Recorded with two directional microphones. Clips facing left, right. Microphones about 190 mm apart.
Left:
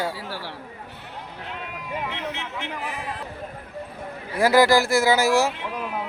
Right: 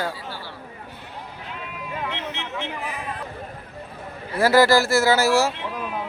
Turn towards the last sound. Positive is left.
turn(degrees=15)  # may be behind; listen again after turning